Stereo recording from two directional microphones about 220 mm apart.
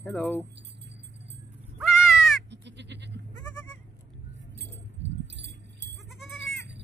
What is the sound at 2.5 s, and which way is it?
Goat, 50° right (ahead or behind).